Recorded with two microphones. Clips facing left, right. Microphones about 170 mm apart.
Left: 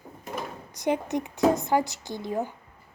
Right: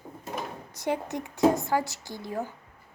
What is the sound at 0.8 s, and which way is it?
A woman's voice, 20° left (ahead or behind).